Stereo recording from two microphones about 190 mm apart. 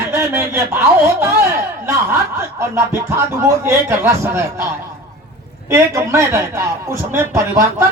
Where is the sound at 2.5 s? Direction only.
15° right (ahead or behind).